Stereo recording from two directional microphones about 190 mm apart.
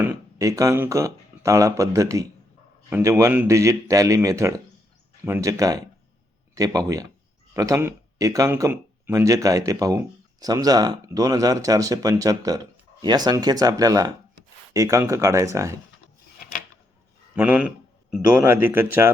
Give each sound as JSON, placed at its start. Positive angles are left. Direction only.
{"t": 0.0, "sound": "speech", "side_deg": -15}
{"t": 17.3, "sound": "speech", "side_deg": -5}